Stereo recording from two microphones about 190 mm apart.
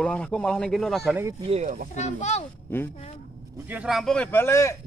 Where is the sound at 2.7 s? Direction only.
10° left (ahead or behind).